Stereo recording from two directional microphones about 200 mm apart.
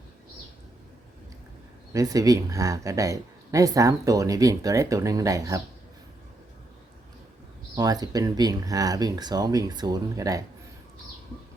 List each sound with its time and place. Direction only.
1.9 s speech: 15° right (ahead or behind)
7.8 s speech: 20° right (ahead or behind)